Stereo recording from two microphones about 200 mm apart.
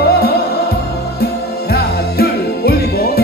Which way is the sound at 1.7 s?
50° left (ahead or behind).